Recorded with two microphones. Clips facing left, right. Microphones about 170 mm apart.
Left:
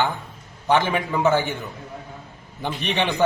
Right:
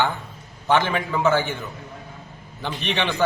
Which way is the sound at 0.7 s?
15° left (ahead or behind).